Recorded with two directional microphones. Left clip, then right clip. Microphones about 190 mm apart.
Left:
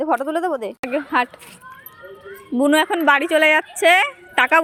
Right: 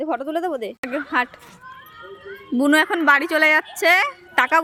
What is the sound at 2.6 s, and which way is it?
A woman's voice, 5° right (ahead or behind).